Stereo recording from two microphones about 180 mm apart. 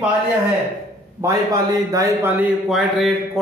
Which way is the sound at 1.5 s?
20° right (ahead or behind).